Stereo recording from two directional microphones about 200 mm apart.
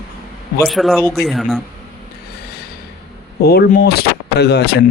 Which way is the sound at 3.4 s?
50° left (ahead or behind).